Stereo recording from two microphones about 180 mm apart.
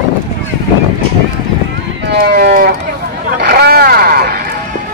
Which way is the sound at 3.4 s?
60° right (ahead or behind).